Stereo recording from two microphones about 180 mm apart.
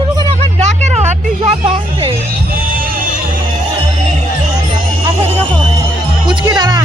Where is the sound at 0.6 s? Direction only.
40° right (ahead or behind).